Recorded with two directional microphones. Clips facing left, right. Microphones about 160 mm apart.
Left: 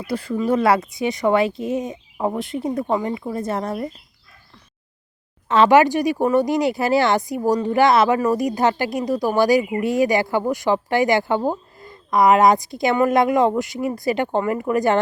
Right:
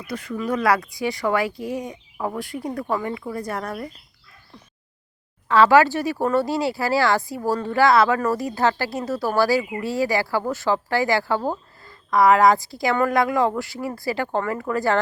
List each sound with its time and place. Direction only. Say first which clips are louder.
0.0 s speech: left 5 dB; 30° left (ahead or behind)
5.5 s speech: left 1 dB; 20° left (ahead or behind)